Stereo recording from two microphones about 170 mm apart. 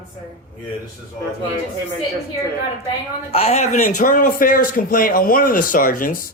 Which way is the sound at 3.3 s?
35° left (ahead or behind).